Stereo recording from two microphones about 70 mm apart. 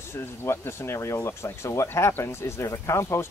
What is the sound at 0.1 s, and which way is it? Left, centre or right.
Speech, left.